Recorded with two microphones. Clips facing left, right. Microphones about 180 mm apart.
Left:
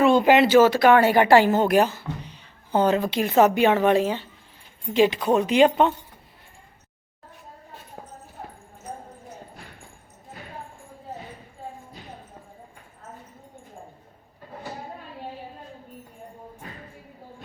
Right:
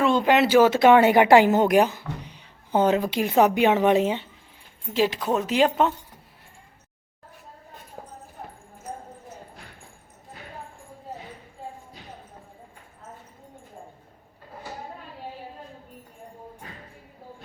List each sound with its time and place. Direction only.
0.0 s speech: 10° left (ahead or behind)
0.4 s speech: 10° right (ahead or behind)
0.7 s speech: 20° right (ahead or behind)
4.9 s speech: centre (ahead or behind)